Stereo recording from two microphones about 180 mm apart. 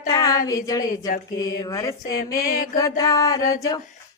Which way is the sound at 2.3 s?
50° left (ahead or behind).